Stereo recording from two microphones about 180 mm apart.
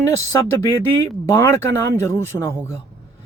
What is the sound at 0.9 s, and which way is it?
Speech, 15° left (ahead or behind).